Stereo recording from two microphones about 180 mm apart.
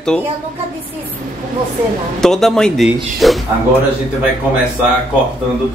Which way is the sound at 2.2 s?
5° left (ahead or behind).